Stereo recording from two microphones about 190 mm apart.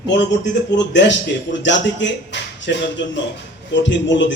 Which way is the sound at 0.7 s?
70° left (ahead or behind).